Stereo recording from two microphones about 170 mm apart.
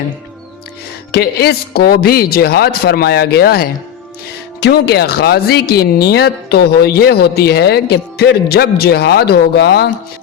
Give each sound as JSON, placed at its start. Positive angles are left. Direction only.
{"t": 1.1, "sound": "speech", "side_deg": 70}